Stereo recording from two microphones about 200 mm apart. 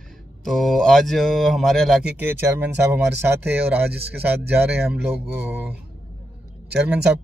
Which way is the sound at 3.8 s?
55° right (ahead or behind).